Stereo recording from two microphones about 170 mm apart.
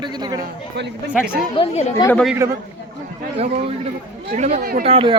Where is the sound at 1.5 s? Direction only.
35° left (ahead or behind).